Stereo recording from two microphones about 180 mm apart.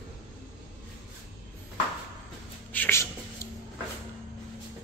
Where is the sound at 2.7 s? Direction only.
10° left (ahead or behind).